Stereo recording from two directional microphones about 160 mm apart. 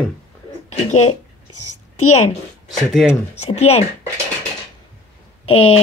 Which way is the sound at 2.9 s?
Centre (ahead or behind).